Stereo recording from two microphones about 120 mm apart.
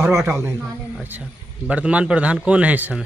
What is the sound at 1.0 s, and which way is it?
A man's voice, 15° right (ahead or behind).